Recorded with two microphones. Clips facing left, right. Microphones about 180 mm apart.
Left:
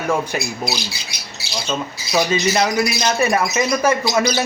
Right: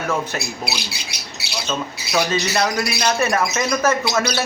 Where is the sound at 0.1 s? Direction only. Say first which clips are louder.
Left 4 dB; 10° left (ahead or behind).